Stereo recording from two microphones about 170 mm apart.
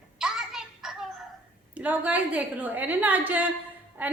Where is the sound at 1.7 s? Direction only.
10° right (ahead or behind).